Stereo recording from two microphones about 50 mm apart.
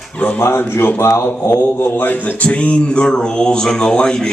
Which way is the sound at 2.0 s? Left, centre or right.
Left.